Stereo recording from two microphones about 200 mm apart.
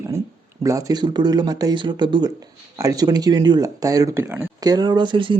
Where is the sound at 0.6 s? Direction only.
15° right (ahead or behind).